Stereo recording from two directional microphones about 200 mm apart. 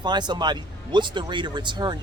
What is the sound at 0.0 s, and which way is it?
Speech, 20° right (ahead or behind).